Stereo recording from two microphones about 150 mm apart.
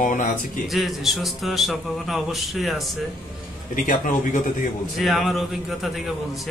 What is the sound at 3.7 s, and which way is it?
Speech, 60° left (ahead or behind).